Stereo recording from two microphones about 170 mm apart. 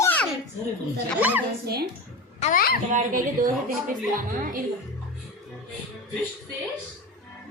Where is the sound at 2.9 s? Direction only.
50° right (ahead or behind).